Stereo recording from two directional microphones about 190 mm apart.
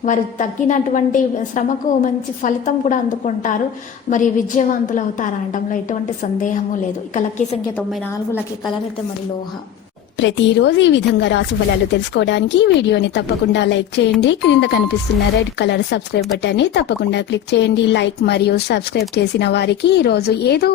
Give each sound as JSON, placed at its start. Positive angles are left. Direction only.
{"t": 0.0, "sound": "a woman's voice", "side_deg": 40}
{"t": 7.1, "sound": "a woman's voice", "side_deg": 40}
{"t": 7.8, "sound": "a woman's voice", "side_deg": 5}
{"t": 10.2, "sound": "a woman's voice", "side_deg": 75}